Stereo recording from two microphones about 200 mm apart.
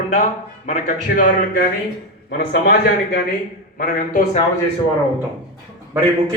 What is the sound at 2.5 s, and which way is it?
Speech, 55° left (ahead or behind).